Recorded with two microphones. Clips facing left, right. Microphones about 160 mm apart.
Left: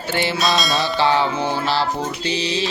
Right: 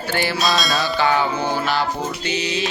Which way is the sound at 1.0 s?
30° left (ahead or behind).